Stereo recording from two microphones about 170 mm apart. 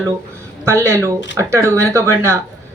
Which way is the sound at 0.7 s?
15° right (ahead or behind).